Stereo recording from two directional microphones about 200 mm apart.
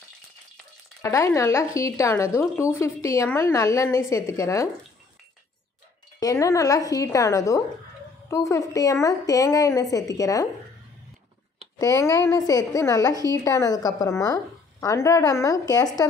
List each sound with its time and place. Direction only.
1.0 s a woman's voice: 15° left (ahead or behind)
6.1 s a woman's voice: 15° left (ahead or behind)
11.8 s a woman's voice: 15° left (ahead or behind)